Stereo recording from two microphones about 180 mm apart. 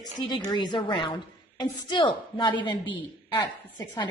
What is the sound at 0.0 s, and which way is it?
A woman's voice, 25° left (ahead or behind).